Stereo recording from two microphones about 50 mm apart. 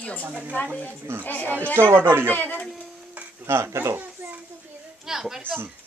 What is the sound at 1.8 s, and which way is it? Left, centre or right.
Speech, right.